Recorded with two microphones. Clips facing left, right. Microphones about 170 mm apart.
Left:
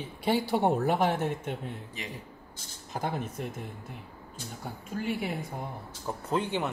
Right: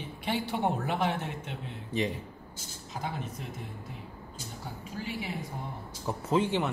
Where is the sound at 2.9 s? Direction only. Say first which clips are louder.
Left 4 dB; 50° left (ahead or behind).